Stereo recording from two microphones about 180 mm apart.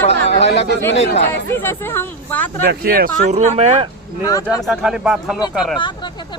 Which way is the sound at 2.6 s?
65° right (ahead or behind).